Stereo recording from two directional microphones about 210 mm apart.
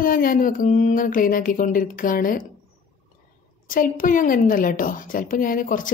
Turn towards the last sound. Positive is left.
turn(degrees=40)  # may be behind; listen again after turning